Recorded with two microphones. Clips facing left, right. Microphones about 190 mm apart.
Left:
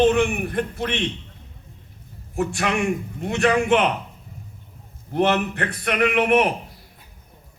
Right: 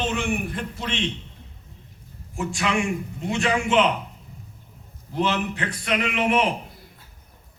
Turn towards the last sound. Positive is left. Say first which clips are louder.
# left 4 dB
turn(degrees=55)  # may be behind; listen again after turning